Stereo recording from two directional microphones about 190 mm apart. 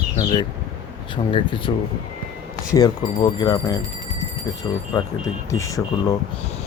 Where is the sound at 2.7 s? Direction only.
20° left (ahead or behind).